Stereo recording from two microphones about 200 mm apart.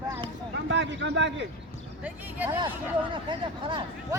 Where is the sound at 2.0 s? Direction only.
10° right (ahead or behind).